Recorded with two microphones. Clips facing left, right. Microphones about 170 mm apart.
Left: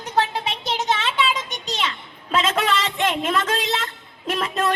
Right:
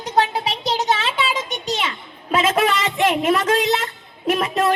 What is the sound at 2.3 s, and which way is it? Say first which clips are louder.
A woman's voice: right 3 dB; 10° right (ahead or behind).